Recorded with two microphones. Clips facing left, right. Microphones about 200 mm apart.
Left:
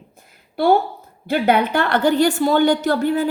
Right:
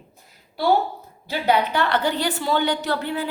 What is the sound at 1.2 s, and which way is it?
A woman's voice, 55° left (ahead or behind).